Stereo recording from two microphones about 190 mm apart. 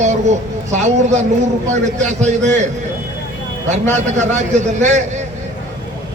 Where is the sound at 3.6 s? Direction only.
35° right (ahead or behind).